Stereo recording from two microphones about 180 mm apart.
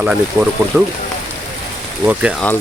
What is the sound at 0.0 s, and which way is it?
Speech, 5° right (ahead or behind).